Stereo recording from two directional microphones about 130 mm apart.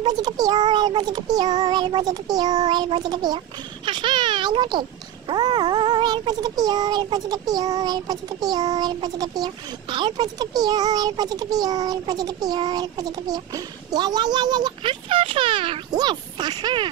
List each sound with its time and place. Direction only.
0.0 s speech: 30° right (ahead or behind)